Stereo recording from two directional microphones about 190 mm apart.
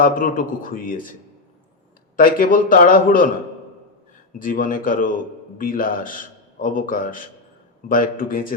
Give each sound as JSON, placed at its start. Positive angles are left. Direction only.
{"t": 0.0, "sound": "a man's voice", "side_deg": 45}
{"t": 2.1, "sound": "a man's voice", "side_deg": 45}
{"t": 4.4, "sound": "a man's voice", "side_deg": 45}